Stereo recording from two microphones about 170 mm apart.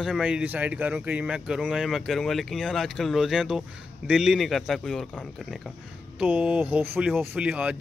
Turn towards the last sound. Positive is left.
turn(degrees=-5)  # may be behind; listen again after turning